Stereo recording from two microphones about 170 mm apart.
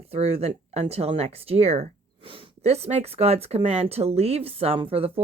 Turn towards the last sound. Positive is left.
turn(degrees=-35)  # may be behind; listen again after turning